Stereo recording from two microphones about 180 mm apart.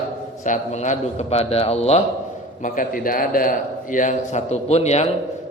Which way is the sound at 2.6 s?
50° left (ahead or behind).